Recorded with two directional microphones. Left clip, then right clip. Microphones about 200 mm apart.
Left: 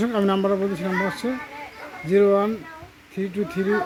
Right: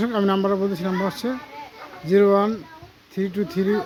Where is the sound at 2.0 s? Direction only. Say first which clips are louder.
Right 1 dB; 10° right (ahead or behind).